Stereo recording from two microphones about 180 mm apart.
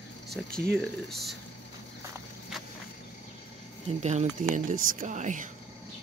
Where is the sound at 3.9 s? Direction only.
40° right (ahead or behind).